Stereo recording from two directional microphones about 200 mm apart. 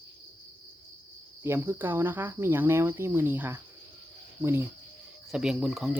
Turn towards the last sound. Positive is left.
turn(degrees=-5)  # may be behind; listen again after turning